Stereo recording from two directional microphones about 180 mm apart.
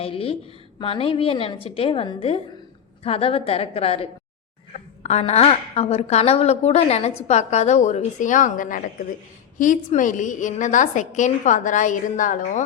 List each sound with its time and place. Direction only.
0.0 s a woman's voice: 30° left (ahead or behind)